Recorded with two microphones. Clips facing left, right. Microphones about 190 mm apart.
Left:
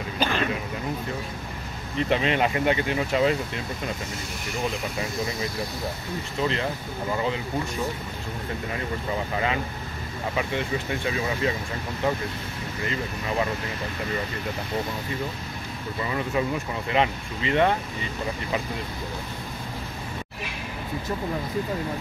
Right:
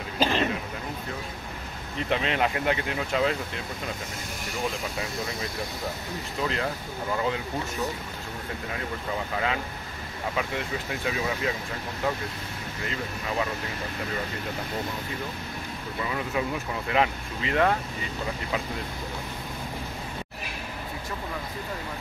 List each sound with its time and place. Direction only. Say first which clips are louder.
0.2 s a sound: right 1 dB; 30° right (ahead or behind)
2.0 s speech: left 3 dB; centre (ahead or behind)
6.4 s speech: left 2 dB; centre (ahead or behind)
10.3 s speech: left 4 dB; centre (ahead or behind)
16.1 s speech: left 3 dB; centre (ahead or behind)